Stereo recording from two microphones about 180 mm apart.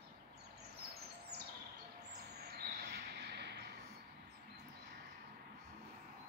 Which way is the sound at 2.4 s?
65° right (ahead or behind).